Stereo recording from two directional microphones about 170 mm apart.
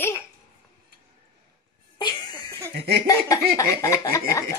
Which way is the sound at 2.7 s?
70° right (ahead or behind).